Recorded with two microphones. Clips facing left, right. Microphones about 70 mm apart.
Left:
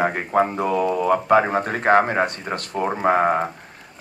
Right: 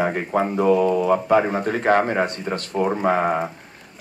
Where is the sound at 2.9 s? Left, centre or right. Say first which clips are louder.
Left 3 dB; left.